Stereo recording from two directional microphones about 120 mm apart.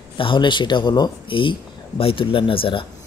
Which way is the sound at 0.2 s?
40° left (ahead or behind).